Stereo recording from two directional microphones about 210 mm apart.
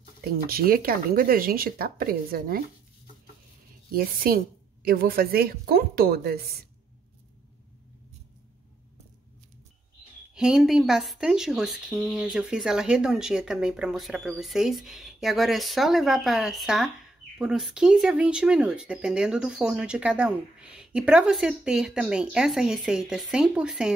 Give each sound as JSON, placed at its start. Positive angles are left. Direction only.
{"t": 0.2, "sound": "speech", "side_deg": -45}
{"t": 3.9, "sound": "speech", "side_deg": -45}
{"t": 10.3, "sound": "speech", "side_deg": -5}